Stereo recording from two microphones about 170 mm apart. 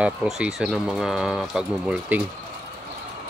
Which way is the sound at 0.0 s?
5° right (ahead or behind).